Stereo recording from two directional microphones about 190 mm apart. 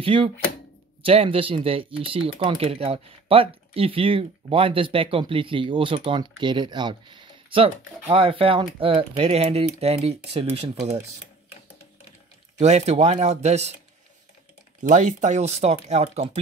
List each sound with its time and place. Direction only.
0.0 s speech: 30° right (ahead or behind)
12.5 s speech: 35° right (ahead or behind)
14.8 s speech: 40° right (ahead or behind)